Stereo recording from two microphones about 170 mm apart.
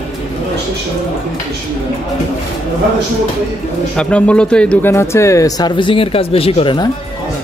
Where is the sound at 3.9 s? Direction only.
5° left (ahead or behind).